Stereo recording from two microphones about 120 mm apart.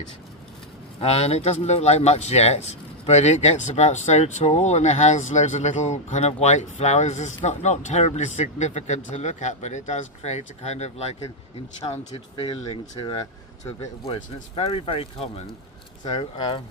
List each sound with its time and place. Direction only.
0.9 s speech: 60° left (ahead or behind)
13.7 s speech: 50° left (ahead or behind)
16.1 s speech: 40° left (ahead or behind)